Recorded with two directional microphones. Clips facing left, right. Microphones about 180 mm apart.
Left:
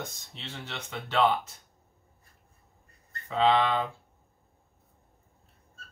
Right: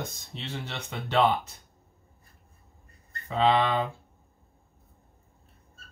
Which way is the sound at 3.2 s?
15° right (ahead or behind).